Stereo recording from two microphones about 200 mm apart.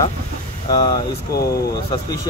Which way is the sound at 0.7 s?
20° left (ahead or behind).